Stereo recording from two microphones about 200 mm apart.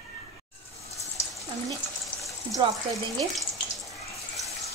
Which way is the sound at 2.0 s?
Centre (ahead or behind).